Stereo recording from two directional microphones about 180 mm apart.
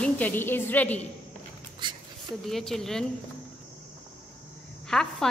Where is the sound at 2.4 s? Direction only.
Centre (ahead or behind).